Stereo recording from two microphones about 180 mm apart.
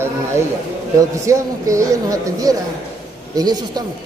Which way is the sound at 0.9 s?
15° right (ahead or behind).